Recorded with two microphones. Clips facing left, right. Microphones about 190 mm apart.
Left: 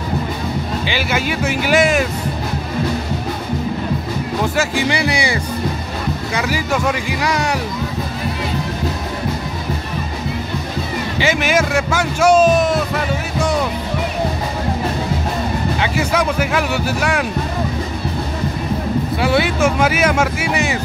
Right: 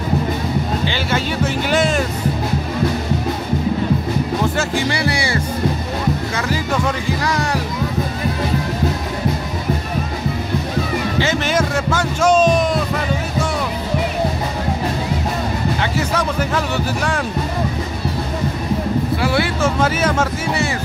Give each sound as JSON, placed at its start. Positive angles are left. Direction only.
{"t": 0.8, "sound": "speech", "side_deg": 10}
{"t": 4.6, "sound": "speech", "side_deg": 15}
{"t": 11.1, "sound": "speech", "side_deg": 10}
{"t": 15.8, "sound": "speech", "side_deg": 10}
{"t": 19.2, "sound": "speech", "side_deg": 20}